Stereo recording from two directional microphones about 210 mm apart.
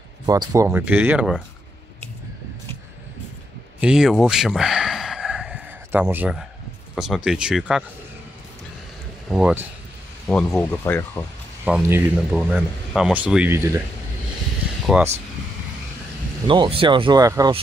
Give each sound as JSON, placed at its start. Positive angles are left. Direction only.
{"t": 0.3, "sound": "speech", "side_deg": -15}
{"t": 3.8, "sound": "a sound", "side_deg": -5}
{"t": 7.2, "sound": "speech", "side_deg": -5}
{"t": 9.3, "sound": "speech", "side_deg": -5}
{"t": 11.6, "sound": "speech", "side_deg": -10}
{"t": 14.9, "sound": "speech", "side_deg": -5}
{"t": 16.4, "sound": "speech", "side_deg": -25}